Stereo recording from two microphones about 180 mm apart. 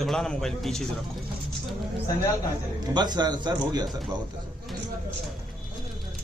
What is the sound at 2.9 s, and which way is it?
Speech, 25° right (ahead or behind).